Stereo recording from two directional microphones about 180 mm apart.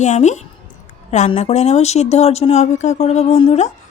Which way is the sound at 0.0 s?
40° left (ahead or behind).